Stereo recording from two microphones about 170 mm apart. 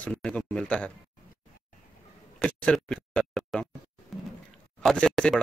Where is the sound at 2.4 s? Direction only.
5° left (ahead or behind).